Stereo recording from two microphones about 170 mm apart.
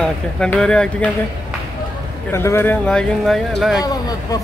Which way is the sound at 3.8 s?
20° left (ahead or behind).